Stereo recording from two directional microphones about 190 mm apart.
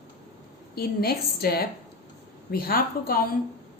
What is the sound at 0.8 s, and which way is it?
A woman's voice, 55° left (ahead or behind).